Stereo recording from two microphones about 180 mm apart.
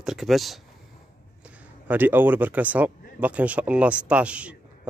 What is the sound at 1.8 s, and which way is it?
Speech, 10° right (ahead or behind).